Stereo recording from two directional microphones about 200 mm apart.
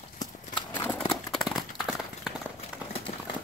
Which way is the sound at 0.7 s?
10° left (ahead or behind).